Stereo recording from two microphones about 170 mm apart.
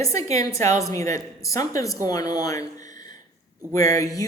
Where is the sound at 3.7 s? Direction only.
20° left (ahead or behind).